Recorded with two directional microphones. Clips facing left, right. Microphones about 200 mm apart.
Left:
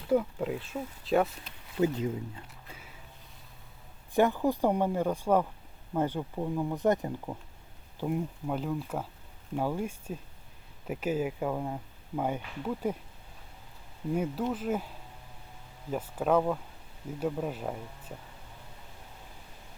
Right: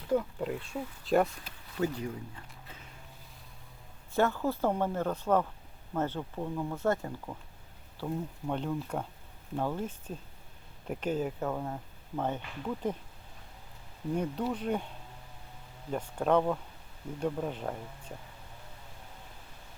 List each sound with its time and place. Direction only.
0.1 s speech: 5° left (ahead or behind)
1.8 s speech: 20° left (ahead or behind)
4.1 s speech: 15° left (ahead or behind)
8.4 s speech: 5° left (ahead or behind)
14.1 s speech: 5° left (ahead or behind)